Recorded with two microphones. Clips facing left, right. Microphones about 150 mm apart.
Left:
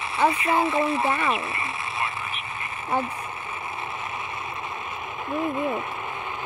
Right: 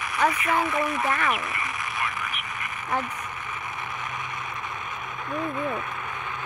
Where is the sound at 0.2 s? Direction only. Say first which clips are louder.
Left 2 dB; 25° left (ahead or behind).